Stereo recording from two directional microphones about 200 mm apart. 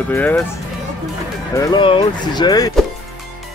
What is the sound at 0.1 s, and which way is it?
Speech, 10° left (ahead or behind).